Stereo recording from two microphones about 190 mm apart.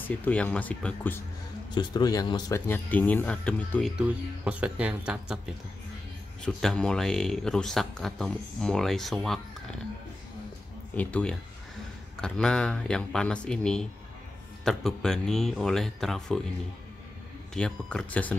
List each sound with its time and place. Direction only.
0.0 s speech: 10° left (ahead or behind)
1.8 s speech: 20° left (ahead or behind)
2.7 s speech: 10° left (ahead or behind)
4.0 s speech: 5° right (ahead or behind)
6.4 s speech: 5° left (ahead or behind)
11.0 s speech: 5° left (ahead or behind)
17.6 s speech: 5° left (ahead or behind)